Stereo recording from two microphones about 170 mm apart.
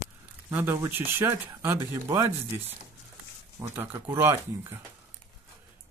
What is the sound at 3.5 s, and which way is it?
Speech, 15° right (ahead or behind).